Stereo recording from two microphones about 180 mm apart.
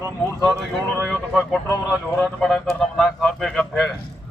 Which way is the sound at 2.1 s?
5° left (ahead or behind).